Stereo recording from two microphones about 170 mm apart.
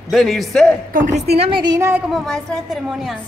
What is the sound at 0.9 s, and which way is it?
Speech, 45° right (ahead or behind).